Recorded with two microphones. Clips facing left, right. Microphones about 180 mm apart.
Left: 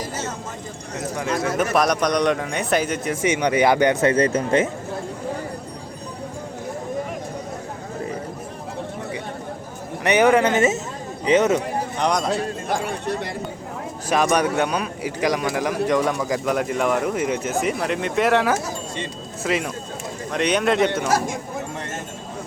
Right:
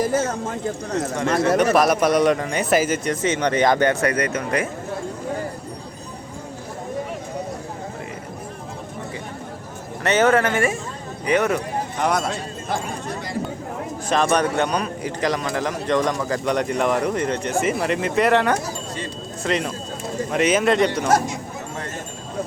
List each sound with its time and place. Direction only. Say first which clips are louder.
0.0 s a sound: right 8 dB; 50° right (ahead or behind)
1.5 s a man's voice: right 1 dB; centre (ahead or behind); by 4.1 s 15° left (ahead or behind)
4.1 s speech: left 4 dB; 30° left (ahead or behind)
10.0 s a man's voice: left 1 dB; 15° left (ahead or behind)
12.0 s a man's voice: even; 5° right (ahead or behind)
14.1 s a man's voice: even; 10° left (ahead or behind)